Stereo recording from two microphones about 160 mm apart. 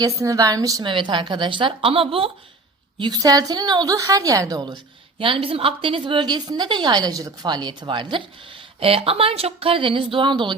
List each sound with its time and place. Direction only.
0.0 s a woman's voice: 20° right (ahead or behind)
3.0 s a woman's voice: 25° right (ahead or behind)